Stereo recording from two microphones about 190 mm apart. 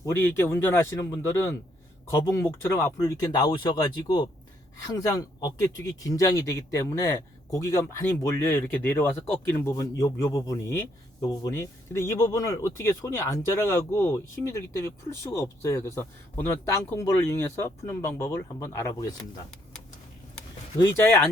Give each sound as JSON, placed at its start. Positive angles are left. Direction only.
{"t": 0.0, "sound": "speech", "side_deg": 10}
{"t": 20.7, "sound": "speech", "side_deg": 10}